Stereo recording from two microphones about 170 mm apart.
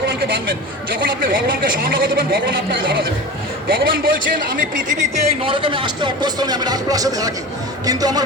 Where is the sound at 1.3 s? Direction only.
55° right (ahead or behind).